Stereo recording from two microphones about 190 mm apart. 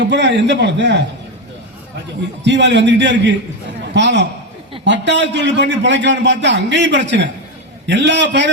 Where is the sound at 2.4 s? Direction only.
70° right (ahead or behind).